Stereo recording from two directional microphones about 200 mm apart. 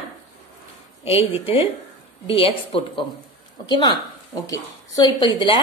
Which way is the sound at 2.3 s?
30° left (ahead or behind).